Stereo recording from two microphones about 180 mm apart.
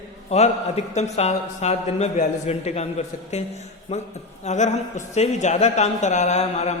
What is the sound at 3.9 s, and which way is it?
A man's voice, 35° left (ahead or behind).